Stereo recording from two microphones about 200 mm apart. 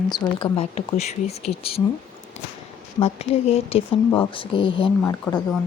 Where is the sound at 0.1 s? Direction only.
25° left (ahead or behind).